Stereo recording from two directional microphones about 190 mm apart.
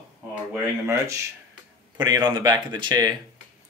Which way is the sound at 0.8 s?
15° right (ahead or behind).